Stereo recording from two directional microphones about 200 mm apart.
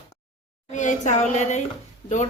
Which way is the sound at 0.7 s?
40° left (ahead or behind).